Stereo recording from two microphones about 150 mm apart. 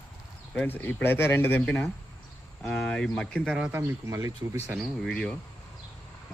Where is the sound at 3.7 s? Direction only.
20° right (ahead or behind).